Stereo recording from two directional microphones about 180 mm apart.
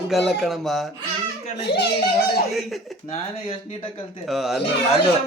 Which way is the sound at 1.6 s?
70° left (ahead or behind).